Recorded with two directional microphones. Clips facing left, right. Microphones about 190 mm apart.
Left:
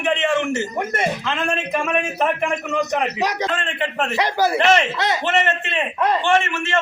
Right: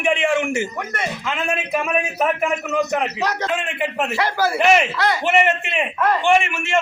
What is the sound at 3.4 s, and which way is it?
Speech, 10° right (ahead or behind).